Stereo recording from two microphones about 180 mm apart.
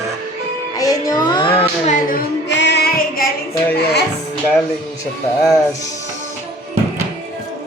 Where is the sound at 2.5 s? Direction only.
75° left (ahead or behind); by 3.3 s 55° left (ahead or behind).